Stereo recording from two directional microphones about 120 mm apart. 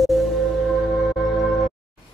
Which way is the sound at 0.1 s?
Centre (ahead or behind).